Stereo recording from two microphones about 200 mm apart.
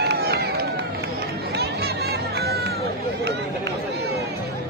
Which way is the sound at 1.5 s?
55° right (ahead or behind).